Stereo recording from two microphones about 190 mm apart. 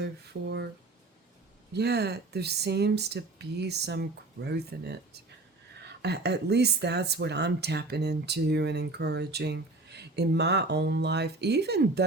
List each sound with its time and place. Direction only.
0.0 s speech: 65° right (ahead or behind)
1.7 s speech: 60° right (ahead or behind)